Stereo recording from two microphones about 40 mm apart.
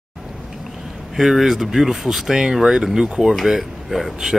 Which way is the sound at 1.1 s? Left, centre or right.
Centre.